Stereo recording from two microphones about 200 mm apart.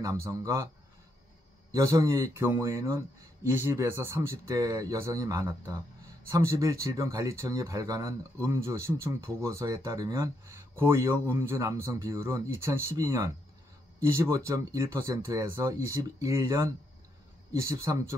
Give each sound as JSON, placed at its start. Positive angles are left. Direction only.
{"t": 0.0, "sound": "speech", "side_deg": -15}
{"t": 1.7, "sound": "speech", "side_deg": -15}